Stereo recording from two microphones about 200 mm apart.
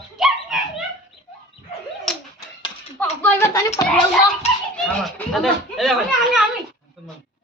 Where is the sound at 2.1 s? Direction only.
5° left (ahead or behind).